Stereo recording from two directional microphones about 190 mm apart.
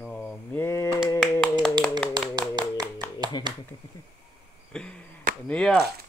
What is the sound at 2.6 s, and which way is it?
Clapping, 20° right (ahead or behind).